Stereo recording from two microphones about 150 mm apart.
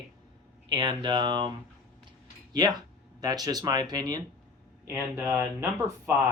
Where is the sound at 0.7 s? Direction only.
30° right (ahead or behind).